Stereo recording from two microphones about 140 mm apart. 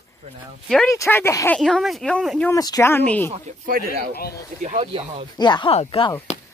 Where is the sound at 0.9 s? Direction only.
20° left (ahead or behind).